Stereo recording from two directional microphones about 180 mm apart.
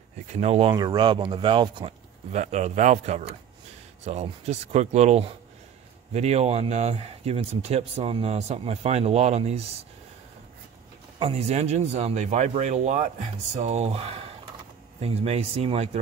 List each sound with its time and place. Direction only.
0.3 s speech: 35° right (ahead or behind)
2.3 s speech: 40° right (ahead or behind)
11.1 s speech: 35° right (ahead or behind)